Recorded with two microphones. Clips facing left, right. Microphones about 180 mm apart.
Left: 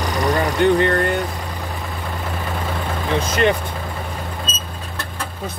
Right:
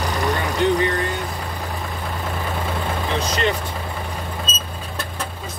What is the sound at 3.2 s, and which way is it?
Vehicle, 55° left (ahead or behind).